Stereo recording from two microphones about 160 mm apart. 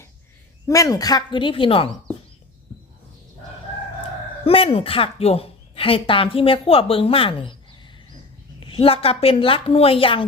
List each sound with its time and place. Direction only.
0.7 s a woman's voice: 20° left (ahead or behind)
4.4 s a woman's voice: 35° left (ahead or behind)
8.6 s a woman's voice: 35° left (ahead or behind)